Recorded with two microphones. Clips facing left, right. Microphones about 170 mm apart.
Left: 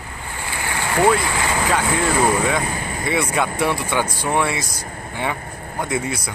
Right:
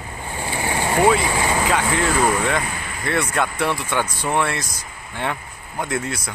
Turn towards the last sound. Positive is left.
turn(degrees=0)  # may be behind; listen again after turning